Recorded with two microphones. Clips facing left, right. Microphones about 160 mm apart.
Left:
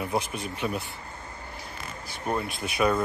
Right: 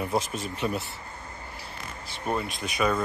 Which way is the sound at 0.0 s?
Centre (ahead or behind).